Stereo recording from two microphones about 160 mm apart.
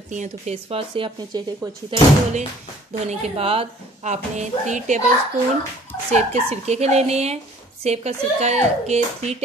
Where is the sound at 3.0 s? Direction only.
35° right (ahead or behind).